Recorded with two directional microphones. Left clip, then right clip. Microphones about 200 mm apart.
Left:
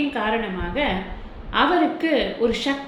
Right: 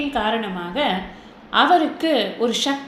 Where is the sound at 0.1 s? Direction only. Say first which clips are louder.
Right 2 dB; 40° right (ahead or behind).